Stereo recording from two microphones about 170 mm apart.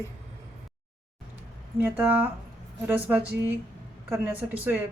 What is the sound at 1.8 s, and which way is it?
Speech, 10° right (ahead or behind).